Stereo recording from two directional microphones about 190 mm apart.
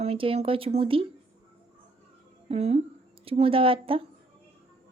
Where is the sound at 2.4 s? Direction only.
35° right (ahead or behind).